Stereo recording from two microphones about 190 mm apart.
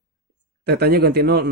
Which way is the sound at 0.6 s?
60° right (ahead or behind).